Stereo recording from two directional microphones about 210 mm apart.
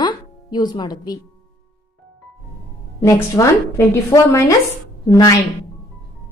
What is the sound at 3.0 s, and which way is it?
A woman's voice, 15° left (ahead or behind).